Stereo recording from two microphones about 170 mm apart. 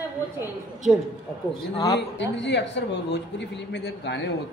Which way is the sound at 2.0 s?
90° left.